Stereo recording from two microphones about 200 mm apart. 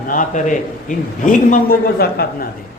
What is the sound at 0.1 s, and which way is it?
A man's voice, 40° left (ahead or behind).